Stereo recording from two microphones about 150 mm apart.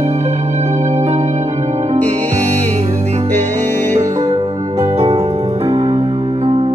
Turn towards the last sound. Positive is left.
turn(degrees=-45)  # may be behind; listen again after turning